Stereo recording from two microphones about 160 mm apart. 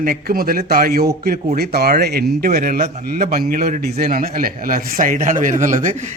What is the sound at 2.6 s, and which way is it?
A man's voice, 65° right (ahead or behind).